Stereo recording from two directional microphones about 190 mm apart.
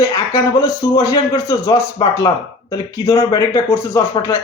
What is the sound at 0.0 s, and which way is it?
Speech, 15° left (ahead or behind).